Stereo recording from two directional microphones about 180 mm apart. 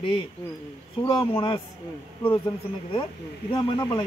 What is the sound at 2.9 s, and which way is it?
Speech, 25° left (ahead or behind).